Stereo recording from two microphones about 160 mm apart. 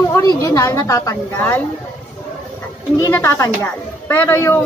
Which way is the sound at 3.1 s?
15° left (ahead or behind).